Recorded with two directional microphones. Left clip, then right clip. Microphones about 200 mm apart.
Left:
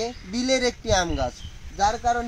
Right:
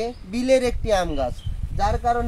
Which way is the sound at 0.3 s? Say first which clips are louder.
Right 4 dB; 30° right (ahead or behind).